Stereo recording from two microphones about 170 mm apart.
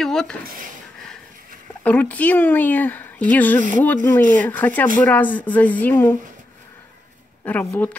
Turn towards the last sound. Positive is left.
turn(degrees=10)  # may be behind; listen again after turning